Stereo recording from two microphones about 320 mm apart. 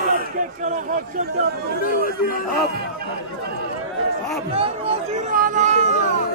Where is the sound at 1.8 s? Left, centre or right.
Left.